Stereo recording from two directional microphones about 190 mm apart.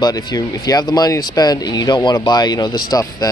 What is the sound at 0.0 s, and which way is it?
Speech, 20° left (ahead or behind).